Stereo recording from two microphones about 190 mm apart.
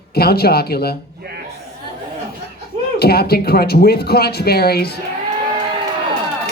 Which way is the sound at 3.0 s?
55° left (ahead or behind).